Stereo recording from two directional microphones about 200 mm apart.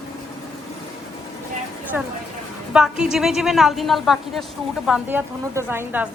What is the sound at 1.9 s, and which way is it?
A woman's voice, 5° right (ahead or behind).